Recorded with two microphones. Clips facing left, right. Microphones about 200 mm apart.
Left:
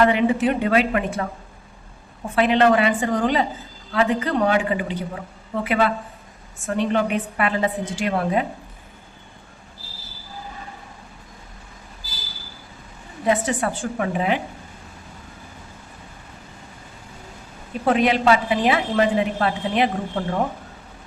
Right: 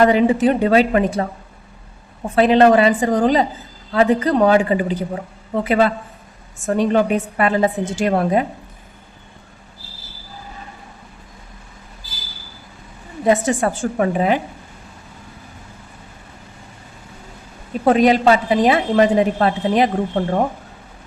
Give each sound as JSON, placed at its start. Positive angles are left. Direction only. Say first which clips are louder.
{"t": 0.0, "sound": "a woman's voice", "louder": "right 4 dB", "side_deg": -35}
{"t": 2.3, "sound": "a woman's voice", "louder": "right 5 dB", "side_deg": -35}
{"t": 13.2, "sound": "a woman's voice", "louder": "right 5 dB", "side_deg": -45}
{"t": 17.8, "sound": "a woman's voice", "louder": "right 5 dB", "side_deg": -40}